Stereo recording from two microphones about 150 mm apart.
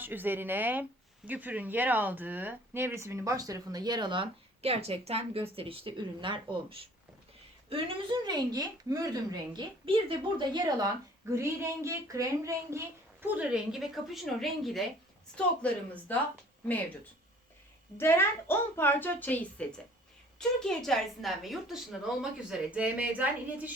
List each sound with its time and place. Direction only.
0.0 s a woman's voice: 15° right (ahead or behind); by 16.2 s 10° left (ahead or behind)
17.9 s a woman's voice: 15° left (ahead or behind); by 23.7 s 10° right (ahead or behind)